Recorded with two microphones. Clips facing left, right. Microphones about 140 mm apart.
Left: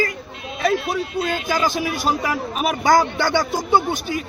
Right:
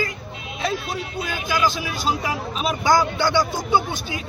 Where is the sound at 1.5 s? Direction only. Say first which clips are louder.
Right 1 dB; 25° left (ahead or behind).